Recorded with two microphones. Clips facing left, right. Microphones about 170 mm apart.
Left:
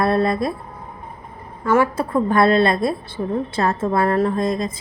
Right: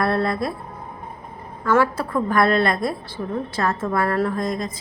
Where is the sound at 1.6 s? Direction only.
20° left (ahead or behind).